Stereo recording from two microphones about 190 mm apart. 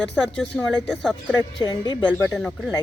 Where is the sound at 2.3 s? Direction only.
Centre (ahead or behind).